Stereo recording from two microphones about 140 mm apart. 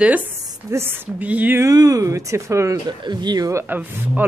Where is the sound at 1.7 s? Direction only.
25° right (ahead or behind).